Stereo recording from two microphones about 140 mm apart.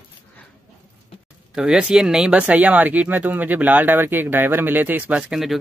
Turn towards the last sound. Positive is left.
turn(degrees=-5)  # may be behind; listen again after turning